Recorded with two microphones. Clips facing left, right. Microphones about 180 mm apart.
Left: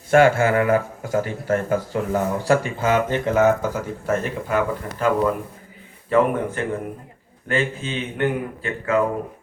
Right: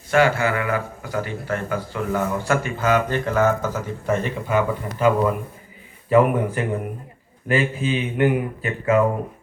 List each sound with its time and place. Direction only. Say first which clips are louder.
0.1 s speech: left 3 dB; 50° left (ahead or behind); by 9.0 s 15° right (ahead or behind)